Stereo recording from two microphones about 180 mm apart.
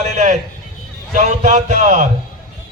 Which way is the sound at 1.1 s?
40° right (ahead or behind).